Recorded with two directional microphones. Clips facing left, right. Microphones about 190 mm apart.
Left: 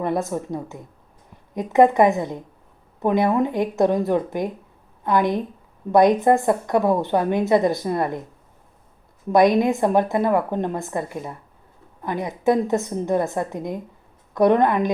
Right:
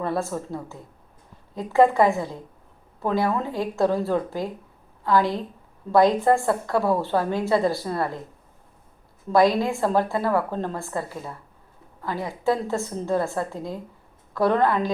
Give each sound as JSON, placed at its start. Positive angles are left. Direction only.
{"t": 0.0, "sound": "a woman's voice", "side_deg": 20}
{"t": 9.3, "sound": "a woman's voice", "side_deg": 20}